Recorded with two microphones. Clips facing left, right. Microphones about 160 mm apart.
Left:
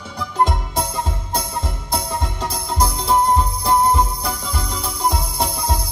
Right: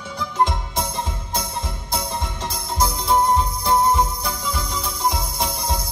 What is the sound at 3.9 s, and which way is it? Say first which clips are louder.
Music: left 1 dB; 35° left (ahead or behind).